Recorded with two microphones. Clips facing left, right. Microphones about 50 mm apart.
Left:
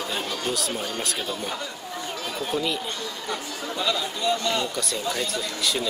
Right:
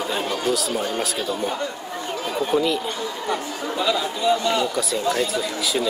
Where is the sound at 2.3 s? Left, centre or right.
Centre.